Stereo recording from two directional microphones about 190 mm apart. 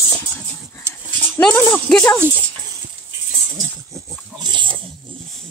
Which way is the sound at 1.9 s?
5° left (ahead or behind).